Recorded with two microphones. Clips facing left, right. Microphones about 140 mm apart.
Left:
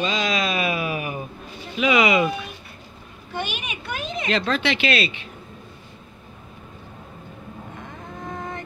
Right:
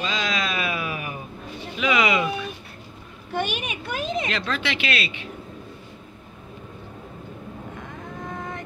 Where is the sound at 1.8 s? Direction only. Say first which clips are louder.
Left 3 dB; 15° left (ahead or behind).